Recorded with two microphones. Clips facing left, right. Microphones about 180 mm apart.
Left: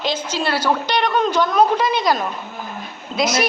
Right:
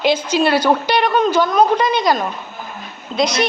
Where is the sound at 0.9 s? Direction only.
5° right (ahead or behind).